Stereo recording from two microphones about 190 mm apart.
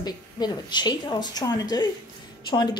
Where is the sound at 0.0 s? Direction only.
20° left (ahead or behind).